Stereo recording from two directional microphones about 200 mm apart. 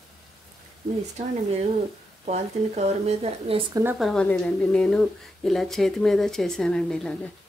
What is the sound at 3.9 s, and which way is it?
A woman's voice, centre (ahead or behind).